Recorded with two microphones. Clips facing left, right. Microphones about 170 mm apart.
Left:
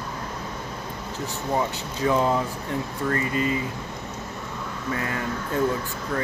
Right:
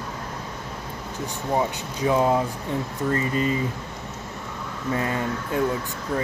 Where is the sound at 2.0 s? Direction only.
15° right (ahead or behind).